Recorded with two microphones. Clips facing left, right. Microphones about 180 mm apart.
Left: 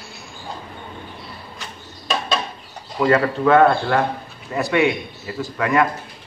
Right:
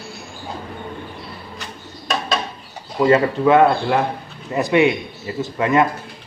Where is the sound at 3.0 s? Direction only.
15° right (ahead or behind).